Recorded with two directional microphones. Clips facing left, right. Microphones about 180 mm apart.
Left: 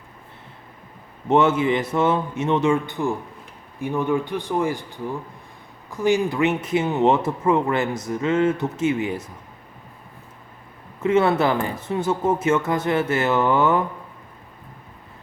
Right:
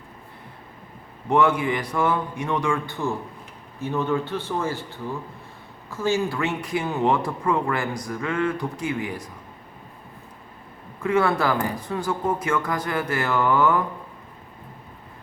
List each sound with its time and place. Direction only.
1.3 s speech: 25° left (ahead or behind)
11.0 s speech: 20° left (ahead or behind)